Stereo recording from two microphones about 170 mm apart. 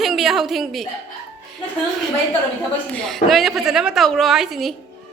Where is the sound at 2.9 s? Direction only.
Centre (ahead or behind).